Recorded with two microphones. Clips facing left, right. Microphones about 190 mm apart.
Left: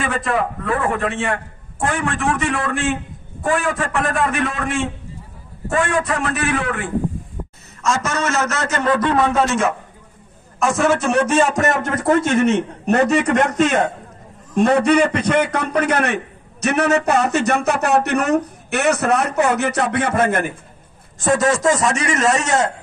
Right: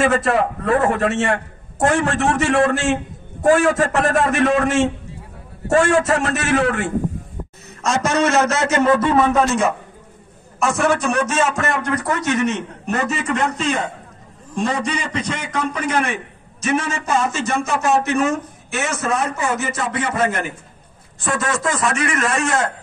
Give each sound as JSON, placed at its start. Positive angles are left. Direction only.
{"t": 0.0, "sound": "a man's voice", "side_deg": -40}
{"t": 7.8, "sound": "a man's voice", "side_deg": -35}
{"t": 8.8, "sound": "a man's voice", "side_deg": -10}
{"t": 11.6, "sound": "a man's voice", "side_deg": 45}
{"t": 13.5, "sound": "a man's voice", "side_deg": 55}
{"t": 21.2, "sound": "a man's voice", "side_deg": 40}
{"t": 21.5, "sound": "a man's voice", "side_deg": 25}